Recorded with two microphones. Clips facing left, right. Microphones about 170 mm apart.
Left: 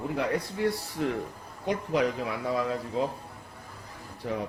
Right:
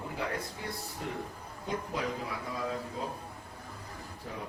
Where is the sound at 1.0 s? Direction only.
90° left.